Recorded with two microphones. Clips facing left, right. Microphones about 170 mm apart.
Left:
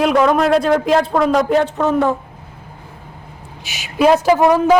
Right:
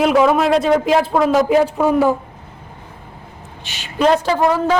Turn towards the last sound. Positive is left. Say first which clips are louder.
# left 4 dB
turn(degrees=15)  # may be behind; listen again after turning